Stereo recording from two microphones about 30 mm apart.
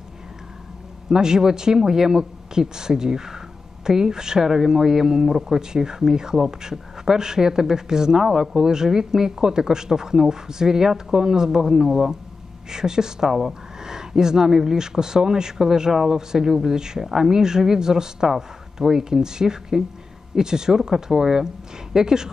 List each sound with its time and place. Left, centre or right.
1.0 s speech: right
17.0 s speech: centre
17.3 s speech: right